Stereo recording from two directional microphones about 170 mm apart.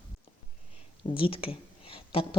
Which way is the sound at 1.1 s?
30° left (ahead or behind).